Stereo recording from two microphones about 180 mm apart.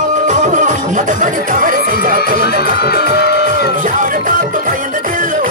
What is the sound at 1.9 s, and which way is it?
Crowd, 50° right (ahead or behind).